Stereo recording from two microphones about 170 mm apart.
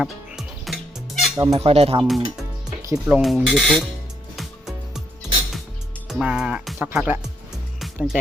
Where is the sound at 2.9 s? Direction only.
Centre (ahead or behind).